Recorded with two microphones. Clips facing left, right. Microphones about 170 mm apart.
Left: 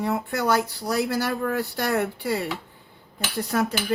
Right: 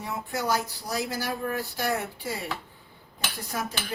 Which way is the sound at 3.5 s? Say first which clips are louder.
Left 9 dB; 65° left (ahead or behind).